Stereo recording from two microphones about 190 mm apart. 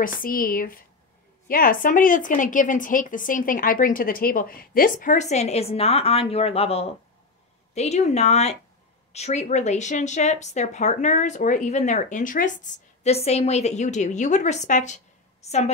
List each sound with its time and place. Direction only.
0.0 s speech: 50° left (ahead or behind)